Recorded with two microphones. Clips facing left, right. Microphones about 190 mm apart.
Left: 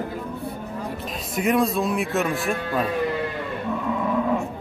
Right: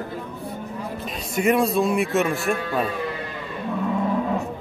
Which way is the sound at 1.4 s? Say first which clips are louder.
Right 2 dB; centre (ahead or behind).